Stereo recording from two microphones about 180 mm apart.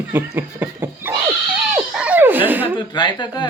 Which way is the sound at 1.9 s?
5° right (ahead or behind).